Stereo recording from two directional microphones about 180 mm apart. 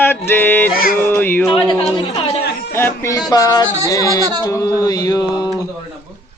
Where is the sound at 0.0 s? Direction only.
10° left (ahead or behind).